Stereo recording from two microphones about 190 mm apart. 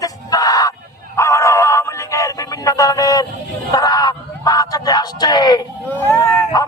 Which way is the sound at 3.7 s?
20° left (ahead or behind).